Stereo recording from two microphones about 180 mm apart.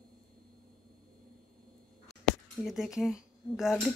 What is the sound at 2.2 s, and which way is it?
Speech, centre (ahead or behind).